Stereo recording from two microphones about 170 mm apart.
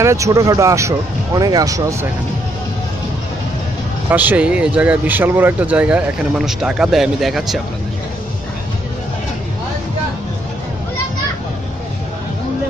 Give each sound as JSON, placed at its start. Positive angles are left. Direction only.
{"t": 0.0, "sound": "speech", "side_deg": -15}
{"t": 4.1, "sound": "speech", "side_deg": -10}